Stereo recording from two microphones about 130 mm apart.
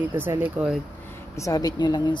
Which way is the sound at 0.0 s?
15° right (ahead or behind).